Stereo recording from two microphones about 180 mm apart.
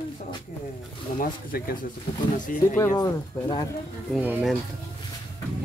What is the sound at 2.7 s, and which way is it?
Speech, 15° left (ahead or behind).